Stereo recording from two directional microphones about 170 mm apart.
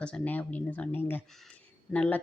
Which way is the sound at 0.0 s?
10° left (ahead or behind).